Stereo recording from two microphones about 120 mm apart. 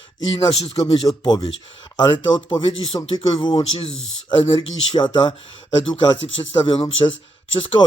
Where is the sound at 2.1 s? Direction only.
45° left (ahead or behind).